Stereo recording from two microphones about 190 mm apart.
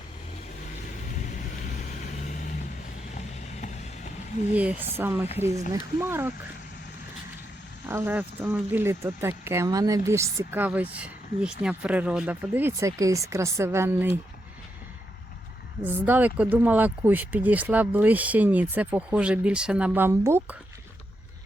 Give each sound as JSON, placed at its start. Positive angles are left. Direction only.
{"t": 2.0, "sound": "vehicle", "side_deg": 40}
{"t": 3.2, "sound": "a sound", "side_deg": 35}
{"t": 4.5, "sound": "speech", "side_deg": -5}
{"t": 7.9, "sound": "speech", "side_deg": -10}
{"t": 15.8, "sound": "speech", "side_deg": -10}